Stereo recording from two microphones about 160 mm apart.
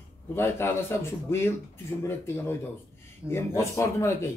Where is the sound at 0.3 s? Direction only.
15° left (ahead or behind).